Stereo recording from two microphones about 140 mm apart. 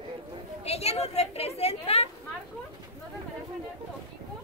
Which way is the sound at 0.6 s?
50° left (ahead or behind).